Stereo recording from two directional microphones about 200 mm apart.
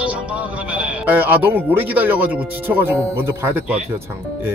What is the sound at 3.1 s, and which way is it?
Speech, 10° right (ahead or behind).